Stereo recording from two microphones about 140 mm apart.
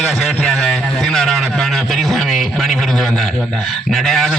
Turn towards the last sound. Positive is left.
turn(degrees=0)  # may be behind; listen again after turning